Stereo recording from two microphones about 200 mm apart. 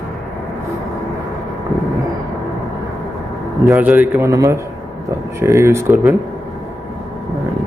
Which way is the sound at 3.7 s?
10° right (ahead or behind).